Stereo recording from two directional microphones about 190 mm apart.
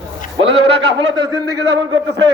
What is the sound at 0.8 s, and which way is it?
A man's voice, 20° right (ahead or behind).